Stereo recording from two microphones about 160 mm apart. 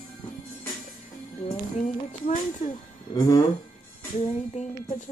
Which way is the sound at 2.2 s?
50° left (ahead or behind).